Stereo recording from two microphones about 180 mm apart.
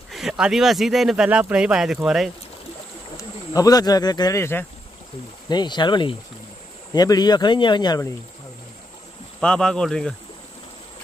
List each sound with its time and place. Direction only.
0.1 s speech: centre (ahead or behind)
3.2 s speech: 20° left (ahead or behind)
5.5 s speech: 25° left (ahead or behind)
9.4 s speech: 5° left (ahead or behind)